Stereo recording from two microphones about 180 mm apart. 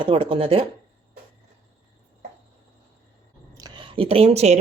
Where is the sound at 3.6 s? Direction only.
25° right (ahead or behind).